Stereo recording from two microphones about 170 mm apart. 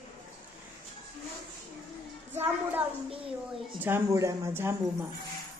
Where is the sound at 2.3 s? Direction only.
15° right (ahead or behind).